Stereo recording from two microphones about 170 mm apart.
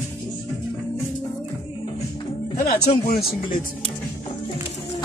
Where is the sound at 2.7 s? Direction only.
60° left (ahead or behind).